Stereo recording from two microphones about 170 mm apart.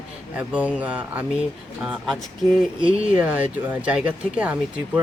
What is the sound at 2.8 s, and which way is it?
Speech, 35° right (ahead or behind).